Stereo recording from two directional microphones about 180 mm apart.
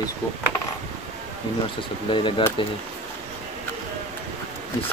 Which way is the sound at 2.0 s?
25° left (ahead or behind).